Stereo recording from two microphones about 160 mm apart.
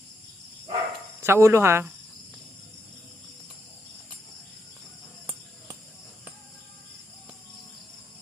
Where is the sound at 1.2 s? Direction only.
15° right (ahead or behind).